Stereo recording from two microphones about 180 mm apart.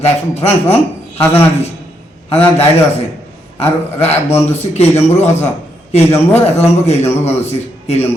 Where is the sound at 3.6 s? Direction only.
35° left (ahead or behind).